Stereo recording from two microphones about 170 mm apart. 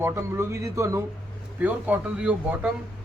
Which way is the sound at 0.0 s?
15° right (ahead or behind).